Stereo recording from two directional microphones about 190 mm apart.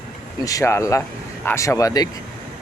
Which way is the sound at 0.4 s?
15° left (ahead or behind).